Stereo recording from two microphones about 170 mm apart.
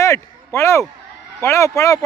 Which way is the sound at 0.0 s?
15° left (ahead or behind).